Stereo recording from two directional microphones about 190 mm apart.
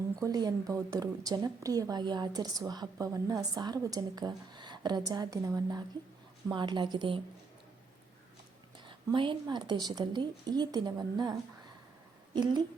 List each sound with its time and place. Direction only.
0.2 s a woman's voice: 20° right (ahead or behind)
8.8 s a woman's voice: 25° right (ahead or behind)